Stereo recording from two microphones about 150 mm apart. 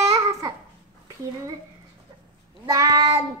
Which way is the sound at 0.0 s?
20° right (ahead or behind).